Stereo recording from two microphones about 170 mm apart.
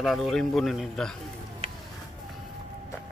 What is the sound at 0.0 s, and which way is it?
A man's voice, centre (ahead or behind).